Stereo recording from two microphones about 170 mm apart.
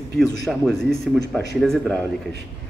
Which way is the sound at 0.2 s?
Centre (ahead or behind).